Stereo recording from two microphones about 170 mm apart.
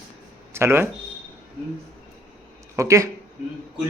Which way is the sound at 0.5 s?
15° right (ahead or behind).